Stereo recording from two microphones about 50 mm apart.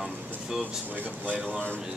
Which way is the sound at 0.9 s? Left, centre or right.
Right.